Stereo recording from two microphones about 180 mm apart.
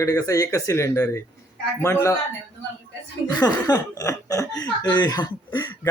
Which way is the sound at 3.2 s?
20° left (ahead or behind).